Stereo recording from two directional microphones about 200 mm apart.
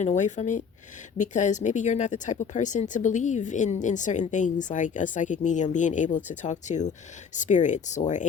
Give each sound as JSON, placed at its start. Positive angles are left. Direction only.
{"t": 0.0, "sound": "speech", "side_deg": 35}